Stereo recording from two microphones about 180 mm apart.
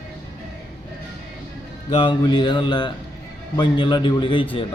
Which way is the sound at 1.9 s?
25° left (ahead or behind).